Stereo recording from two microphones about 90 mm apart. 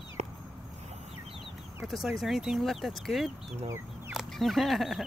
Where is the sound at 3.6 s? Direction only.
30° right (ahead or behind).